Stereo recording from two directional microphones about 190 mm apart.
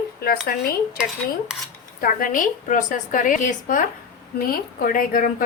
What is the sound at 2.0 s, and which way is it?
A woman's voice, 45° left (ahead or behind).